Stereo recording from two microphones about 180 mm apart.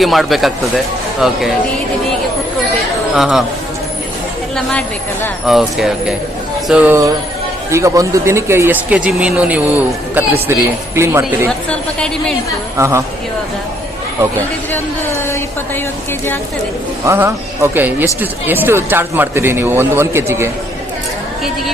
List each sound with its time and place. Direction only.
0.0 s speech: centre (ahead or behind)
3.2 s speech: centre (ahead or behind)
5.5 s speech: centre (ahead or behind)
11.7 s speech: 5° left (ahead or behind)
12.7 s speech: 15° right (ahead or behind)
17.1 s speech: 15° right (ahead or behind)